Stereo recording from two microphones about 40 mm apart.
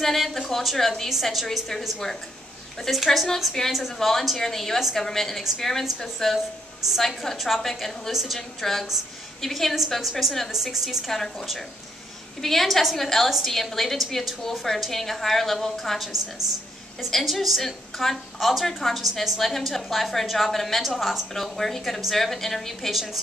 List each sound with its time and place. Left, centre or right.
0.0 s a woman's voice: centre
2.8 s a woman's voice: centre
8.1 s a woman's voice: centre
8.5 s a woman's voice: centre
11.1 s a woman's voice: centre
17.2 s a woman's voice: centre
22.9 s a woman's voice: centre